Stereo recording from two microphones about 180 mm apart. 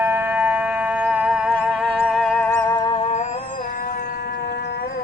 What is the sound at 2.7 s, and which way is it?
Music, 25° left (ahead or behind).